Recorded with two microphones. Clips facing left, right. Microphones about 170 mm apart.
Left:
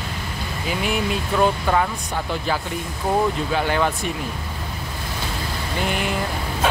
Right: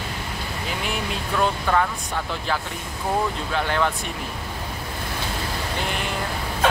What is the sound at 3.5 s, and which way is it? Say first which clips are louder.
Speech: even; 5° left (ahead or behind).